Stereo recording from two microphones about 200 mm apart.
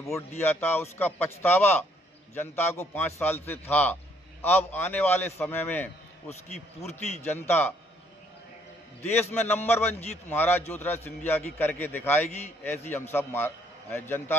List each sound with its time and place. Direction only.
0.4 s a man's voice: 10° left (ahead or behind)
9.3 s a man's voice: 10° left (ahead or behind)